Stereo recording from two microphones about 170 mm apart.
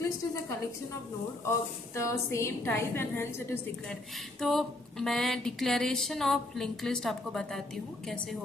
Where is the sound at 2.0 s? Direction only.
15° left (ahead or behind).